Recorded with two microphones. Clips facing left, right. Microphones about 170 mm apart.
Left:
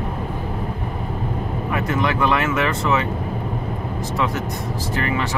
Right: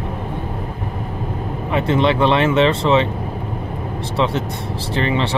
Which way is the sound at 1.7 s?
25° right (ahead or behind).